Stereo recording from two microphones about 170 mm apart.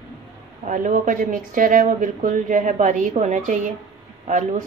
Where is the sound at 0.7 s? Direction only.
50° right (ahead or behind).